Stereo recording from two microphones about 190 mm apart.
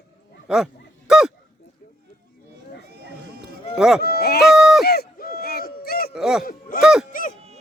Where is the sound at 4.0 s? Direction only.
55° left (ahead or behind).